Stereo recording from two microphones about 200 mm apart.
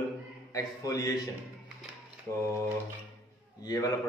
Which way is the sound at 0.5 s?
15° left (ahead or behind).